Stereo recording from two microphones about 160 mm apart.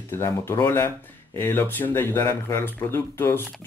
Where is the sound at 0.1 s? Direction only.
15° left (ahead or behind).